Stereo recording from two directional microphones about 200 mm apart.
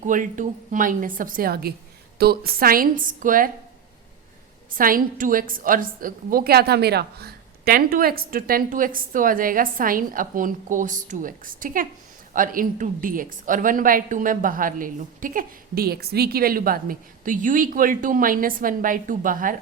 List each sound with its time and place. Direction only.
0.0 s speech: 40° right (ahead or behind)
4.7 s speech: 45° right (ahead or behind)